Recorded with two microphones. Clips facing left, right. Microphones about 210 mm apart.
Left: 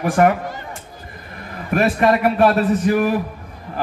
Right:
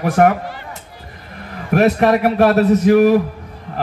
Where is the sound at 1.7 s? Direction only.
60° right (ahead or behind).